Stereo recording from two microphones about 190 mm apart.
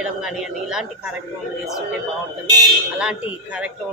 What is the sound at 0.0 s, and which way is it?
Speech, 5° right (ahead or behind).